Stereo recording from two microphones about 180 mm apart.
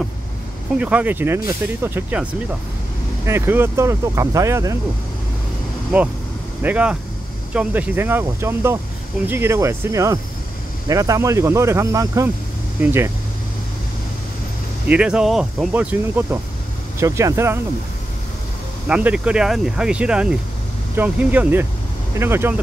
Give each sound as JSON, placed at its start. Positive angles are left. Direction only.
{"t": 0.7, "sound": "speech", "side_deg": -10}
{"t": 3.3, "sound": "speech", "side_deg": -15}
{"t": 6.6, "sound": "speech", "side_deg": -10}
{"t": 14.9, "sound": "speech", "side_deg": -5}
{"t": 18.9, "sound": "speech", "side_deg": -5}